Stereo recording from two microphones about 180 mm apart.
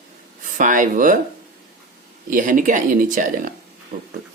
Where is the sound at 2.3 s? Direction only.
45° right (ahead or behind).